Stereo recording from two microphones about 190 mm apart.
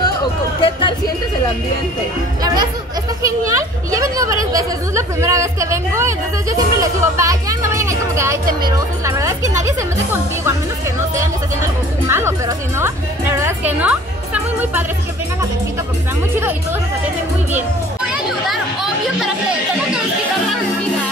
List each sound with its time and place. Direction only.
0.0 s speech: 25° left (ahead or behind)
2.4 s speech: 20° right (ahead or behind)
17.6 s music: 5° right (ahead or behind)